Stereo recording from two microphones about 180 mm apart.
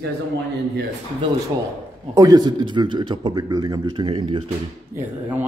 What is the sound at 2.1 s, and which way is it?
A man's voice, 20° right (ahead or behind).